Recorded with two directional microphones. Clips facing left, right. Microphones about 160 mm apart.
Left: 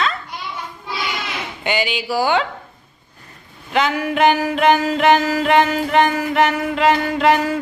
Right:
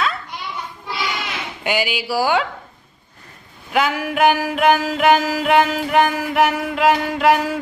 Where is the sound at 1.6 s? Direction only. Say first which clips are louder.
Even; 5° right (ahead or behind).